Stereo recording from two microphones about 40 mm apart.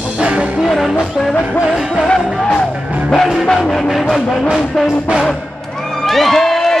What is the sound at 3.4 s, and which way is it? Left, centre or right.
Speech, centre.